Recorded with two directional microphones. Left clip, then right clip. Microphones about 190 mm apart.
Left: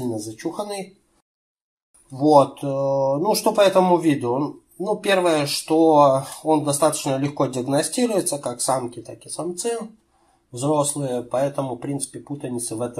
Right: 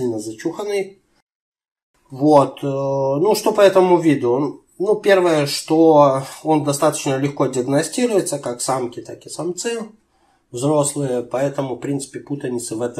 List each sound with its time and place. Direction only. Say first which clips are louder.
0.1 s speech: right 4 dB; 15° left (ahead or behind)
2.1 s speech: right 2 dB; 15° left (ahead or behind)